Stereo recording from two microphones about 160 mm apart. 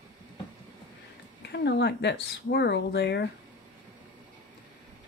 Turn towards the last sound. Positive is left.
turn(degrees=90)